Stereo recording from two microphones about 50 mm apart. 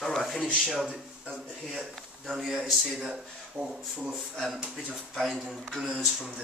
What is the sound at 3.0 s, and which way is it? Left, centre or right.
Speech, centre.